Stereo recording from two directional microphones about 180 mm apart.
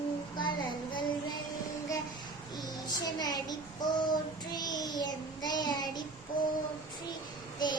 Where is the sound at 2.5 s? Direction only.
20° left (ahead or behind).